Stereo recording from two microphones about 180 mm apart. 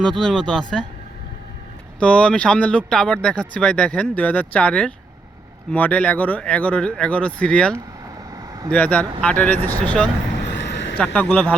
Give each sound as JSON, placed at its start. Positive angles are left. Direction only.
{"t": 0.0, "sound": "speech", "side_deg": 5}
{"t": 2.0, "sound": "speech", "side_deg": 5}
{"t": 8.3, "sound": "vehicle", "side_deg": -20}
{"t": 8.7, "sound": "speech", "side_deg": 10}
{"t": 10.5, "sound": "a sound", "side_deg": 75}
{"t": 10.9, "sound": "speech", "side_deg": 10}